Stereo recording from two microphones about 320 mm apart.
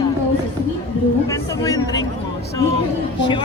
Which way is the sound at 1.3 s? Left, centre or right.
Centre.